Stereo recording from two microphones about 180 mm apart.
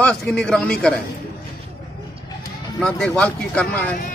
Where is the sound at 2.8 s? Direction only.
5° left (ahead or behind).